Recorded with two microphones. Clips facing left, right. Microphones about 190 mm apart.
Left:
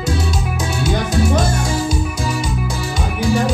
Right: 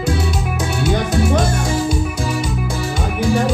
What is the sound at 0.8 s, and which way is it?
Music, 60° right (ahead or behind).